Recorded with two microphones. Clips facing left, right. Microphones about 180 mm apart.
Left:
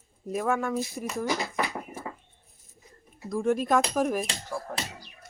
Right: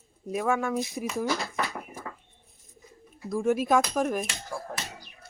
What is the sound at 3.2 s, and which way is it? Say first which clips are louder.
Speech: right 1 dB; centre (ahead or behind).